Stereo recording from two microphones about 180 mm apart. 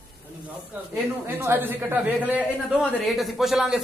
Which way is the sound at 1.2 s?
10° right (ahead or behind).